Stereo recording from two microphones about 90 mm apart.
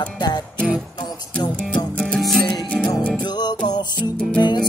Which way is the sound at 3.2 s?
50° left (ahead or behind).